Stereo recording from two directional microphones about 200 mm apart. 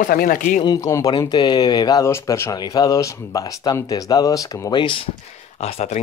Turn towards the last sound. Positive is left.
turn(degrees=30)  # may be behind; listen again after turning